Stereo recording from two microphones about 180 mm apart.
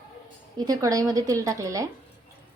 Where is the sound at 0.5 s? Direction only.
20° right (ahead or behind).